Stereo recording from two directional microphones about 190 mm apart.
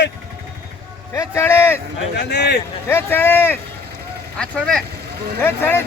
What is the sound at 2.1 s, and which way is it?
Speech, 60° left (ahead or behind).